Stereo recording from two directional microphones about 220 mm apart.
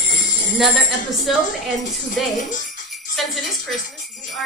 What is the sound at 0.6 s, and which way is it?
Speech, centre (ahead or behind).